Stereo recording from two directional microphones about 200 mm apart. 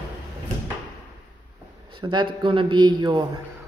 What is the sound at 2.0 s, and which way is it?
A man's voice, 25° right (ahead or behind).